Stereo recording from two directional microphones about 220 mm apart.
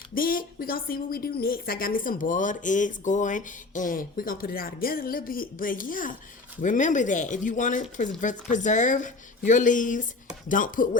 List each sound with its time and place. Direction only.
0.1 s speech: 40° left (ahead or behind)